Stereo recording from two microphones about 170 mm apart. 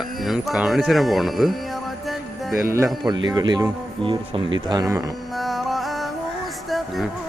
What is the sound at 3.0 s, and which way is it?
Speech, 25° right (ahead or behind).